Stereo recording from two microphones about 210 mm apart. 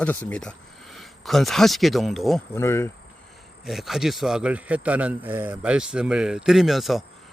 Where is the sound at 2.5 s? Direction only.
10° left (ahead or behind).